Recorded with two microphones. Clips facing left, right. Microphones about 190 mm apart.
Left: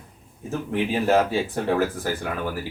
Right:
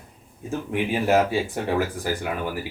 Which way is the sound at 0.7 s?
15° right (ahead or behind).